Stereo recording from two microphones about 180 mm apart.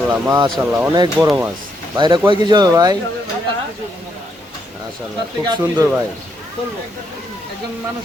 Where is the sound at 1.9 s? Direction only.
25° right (ahead or behind).